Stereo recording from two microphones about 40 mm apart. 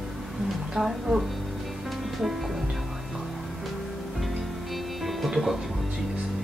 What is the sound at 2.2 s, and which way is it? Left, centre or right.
Music, centre.